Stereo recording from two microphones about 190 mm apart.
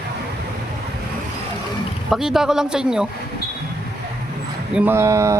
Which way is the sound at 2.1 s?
Centre (ahead or behind).